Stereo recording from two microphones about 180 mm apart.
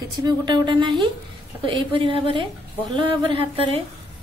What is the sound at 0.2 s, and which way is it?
A woman's voice, 25° right (ahead or behind).